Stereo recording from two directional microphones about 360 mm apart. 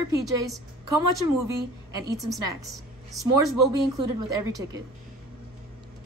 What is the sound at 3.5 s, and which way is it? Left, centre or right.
Speech, right.